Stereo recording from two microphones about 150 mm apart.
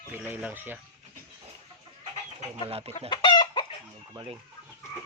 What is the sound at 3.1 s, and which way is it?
Chicken, 30° left (ahead or behind).